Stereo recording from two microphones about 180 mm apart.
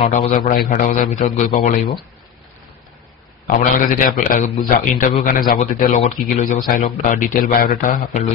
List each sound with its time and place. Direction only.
0.0 s a man's voice: 30° left (ahead or behind)
0.3 s speech: 50° left (ahead or behind)
3.4 s speech: 50° left (ahead or behind)